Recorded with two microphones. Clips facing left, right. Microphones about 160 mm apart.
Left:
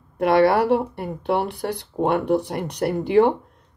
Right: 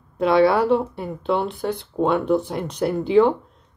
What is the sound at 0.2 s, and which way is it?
Speech, 60° left (ahead or behind).